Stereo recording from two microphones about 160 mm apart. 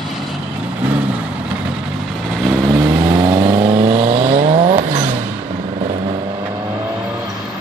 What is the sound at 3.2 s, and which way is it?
Vehicle, 30° right (ahead or behind).